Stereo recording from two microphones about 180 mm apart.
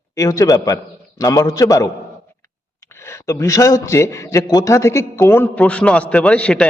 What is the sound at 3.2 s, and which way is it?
A man's voice, 15° left (ahead or behind).